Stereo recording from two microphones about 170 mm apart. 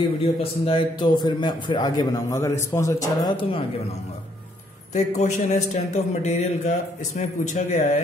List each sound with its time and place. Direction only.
0.2 s a man's voice: 35° left (ahead or behind)
4.9 s speech: 45° left (ahead or behind)